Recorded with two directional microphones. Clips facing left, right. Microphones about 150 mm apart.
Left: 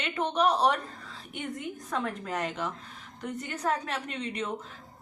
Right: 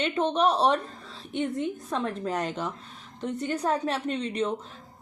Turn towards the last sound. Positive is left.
turn(degrees=-30)  # may be behind; listen again after turning